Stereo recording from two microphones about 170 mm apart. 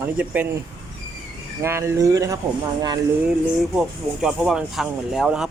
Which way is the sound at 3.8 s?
5° right (ahead or behind).